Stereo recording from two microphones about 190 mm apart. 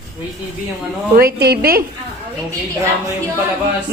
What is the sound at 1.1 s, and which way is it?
Speech, 55° right (ahead or behind).